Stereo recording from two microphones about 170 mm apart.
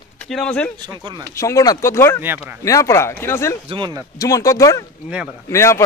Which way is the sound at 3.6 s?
30° right (ahead or behind).